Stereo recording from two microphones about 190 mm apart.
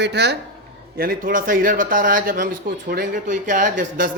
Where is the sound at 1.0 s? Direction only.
50° right (ahead or behind).